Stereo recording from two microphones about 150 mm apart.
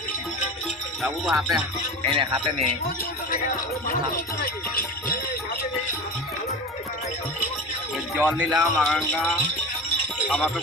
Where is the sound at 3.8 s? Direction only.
75° left (ahead or behind).